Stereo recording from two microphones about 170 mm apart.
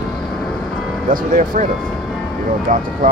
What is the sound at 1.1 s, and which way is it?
Speech, 50° right (ahead or behind).